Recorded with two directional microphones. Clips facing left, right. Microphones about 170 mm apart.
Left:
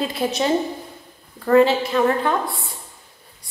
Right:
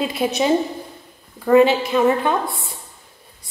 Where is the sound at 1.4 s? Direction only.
15° right (ahead or behind).